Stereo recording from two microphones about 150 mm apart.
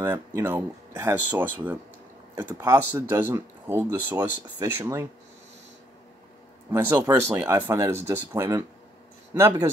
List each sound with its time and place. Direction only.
0.0 s speech: 20° right (ahead or behind)
2.3 s speech: 25° right (ahead or behind)
6.7 s speech: 20° right (ahead or behind)